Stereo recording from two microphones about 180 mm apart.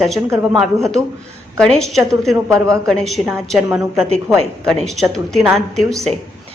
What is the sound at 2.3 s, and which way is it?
Speech, 15° right (ahead or behind).